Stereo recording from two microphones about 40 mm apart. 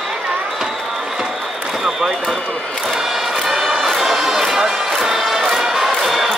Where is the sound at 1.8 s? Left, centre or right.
Centre.